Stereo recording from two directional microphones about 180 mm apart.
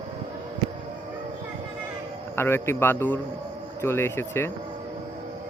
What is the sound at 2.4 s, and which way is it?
Speech, 15° left (ahead or behind).